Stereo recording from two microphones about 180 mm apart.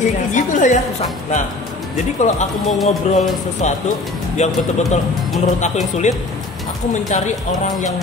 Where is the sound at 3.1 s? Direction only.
40° left (ahead or behind).